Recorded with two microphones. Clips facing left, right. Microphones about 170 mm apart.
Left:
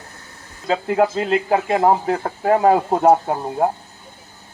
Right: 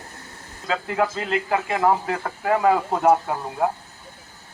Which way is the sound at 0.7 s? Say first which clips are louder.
Left 6 dB; 40° left (ahead or behind).